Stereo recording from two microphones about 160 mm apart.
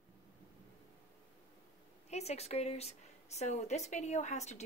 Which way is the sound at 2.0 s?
45° left (ahead or behind).